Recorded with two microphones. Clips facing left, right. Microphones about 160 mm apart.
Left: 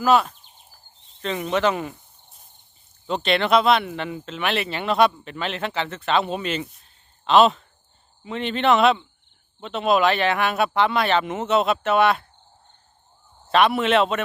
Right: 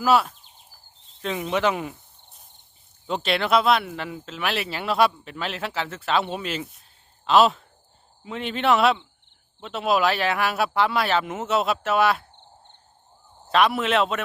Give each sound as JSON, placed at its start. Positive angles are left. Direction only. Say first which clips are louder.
{"t": 0.0, "sound": "speech", "louder": "left 2 dB", "side_deg": -5}
{"t": 3.1, "sound": "speech", "louder": "left 2 dB", "side_deg": -5}
{"t": 13.5, "sound": "speech", "louder": "left 2 dB", "side_deg": 0}